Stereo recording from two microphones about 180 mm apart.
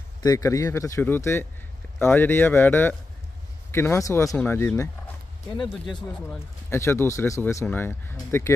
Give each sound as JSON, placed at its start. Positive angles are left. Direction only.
{"t": 0.2, "sound": "speech", "side_deg": 20}
{"t": 6.7, "sound": "speech", "side_deg": 15}